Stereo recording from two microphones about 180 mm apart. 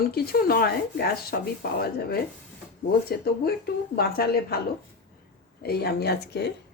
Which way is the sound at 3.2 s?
60° left (ahead or behind).